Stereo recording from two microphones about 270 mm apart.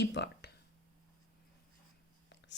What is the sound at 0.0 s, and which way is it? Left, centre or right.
Speech, left.